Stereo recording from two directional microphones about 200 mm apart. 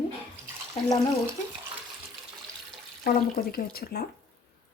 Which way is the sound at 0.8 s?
30° left (ahead or behind).